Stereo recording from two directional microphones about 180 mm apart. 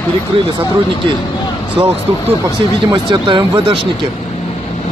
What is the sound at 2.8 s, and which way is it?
Speech, 25° right (ahead or behind).